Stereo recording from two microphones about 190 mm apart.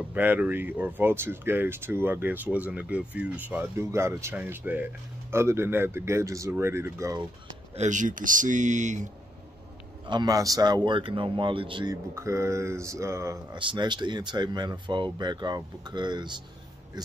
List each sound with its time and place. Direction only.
0.1 s speech: 10° right (ahead or behind)
7.7 s speech: 40° right (ahead or behind)
10.0 s speech: 20° right (ahead or behind)